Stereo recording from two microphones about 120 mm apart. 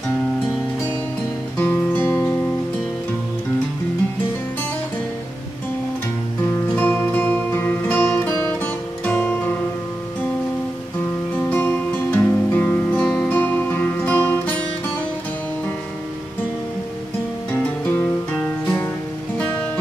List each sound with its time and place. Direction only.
1.6 s music: 20° left (ahead or behind)
6.7 s music: 15° left (ahead or behind)
11.3 s music: 15° left (ahead or behind)
17.8 s guitar: 15° left (ahead or behind)